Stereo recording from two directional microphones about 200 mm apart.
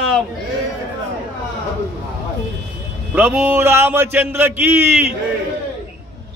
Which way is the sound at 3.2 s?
5° right (ahead or behind).